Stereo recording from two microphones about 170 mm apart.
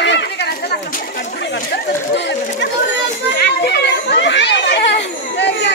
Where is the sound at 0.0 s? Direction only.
85° left.